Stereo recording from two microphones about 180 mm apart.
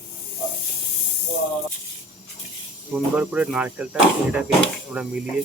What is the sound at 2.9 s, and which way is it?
Speech, 10° right (ahead or behind).